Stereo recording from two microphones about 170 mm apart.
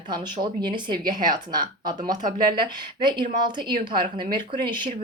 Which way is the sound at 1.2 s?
55° right (ahead or behind).